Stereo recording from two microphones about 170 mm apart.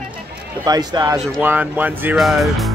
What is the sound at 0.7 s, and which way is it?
Speech, 20° right (ahead or behind).